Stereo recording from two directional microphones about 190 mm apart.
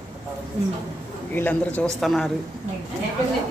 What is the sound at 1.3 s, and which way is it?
A man's voice, 10° left (ahead or behind).